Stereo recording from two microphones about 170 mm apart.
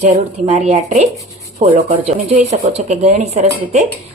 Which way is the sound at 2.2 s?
40° right (ahead or behind).